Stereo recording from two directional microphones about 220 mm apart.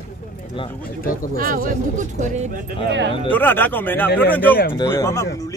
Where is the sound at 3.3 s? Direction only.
10° left (ahead or behind).